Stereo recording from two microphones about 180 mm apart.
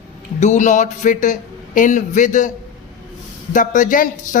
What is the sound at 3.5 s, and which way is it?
Speech, 45° left (ahead or behind).